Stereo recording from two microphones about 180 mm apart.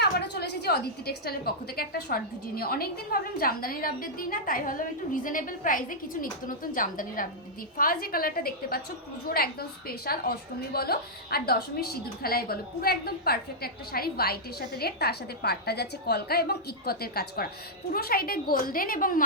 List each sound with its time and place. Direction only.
0.0 s a woman's voice: 65° left (ahead or behind)